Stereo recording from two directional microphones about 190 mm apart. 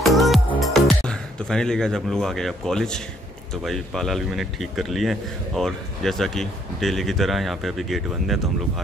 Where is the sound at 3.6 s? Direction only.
Centre (ahead or behind).